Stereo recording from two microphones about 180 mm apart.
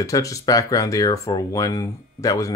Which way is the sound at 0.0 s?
20° left (ahead or behind).